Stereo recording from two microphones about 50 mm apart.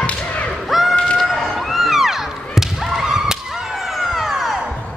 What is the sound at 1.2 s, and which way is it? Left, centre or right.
Music, centre.